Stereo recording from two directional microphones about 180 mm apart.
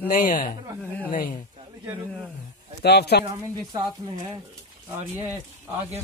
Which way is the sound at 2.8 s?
65° left (ahead or behind).